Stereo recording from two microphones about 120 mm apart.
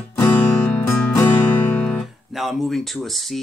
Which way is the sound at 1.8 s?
Centre (ahead or behind).